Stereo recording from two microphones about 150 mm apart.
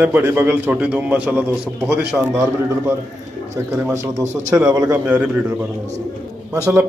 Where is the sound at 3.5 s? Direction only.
15° right (ahead or behind).